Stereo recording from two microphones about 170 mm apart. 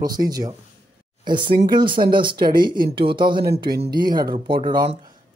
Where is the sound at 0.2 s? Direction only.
20° right (ahead or behind).